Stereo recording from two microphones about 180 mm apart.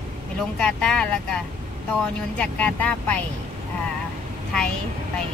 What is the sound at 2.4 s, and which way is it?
Speech, 5° left (ahead or behind).